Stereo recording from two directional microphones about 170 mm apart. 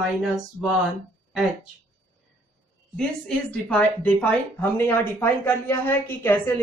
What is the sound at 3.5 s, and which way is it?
A woman's voice, 10° left (ahead or behind).